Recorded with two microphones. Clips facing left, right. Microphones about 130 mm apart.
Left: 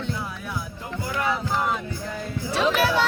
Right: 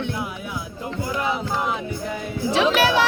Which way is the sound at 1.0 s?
20° right (ahead or behind).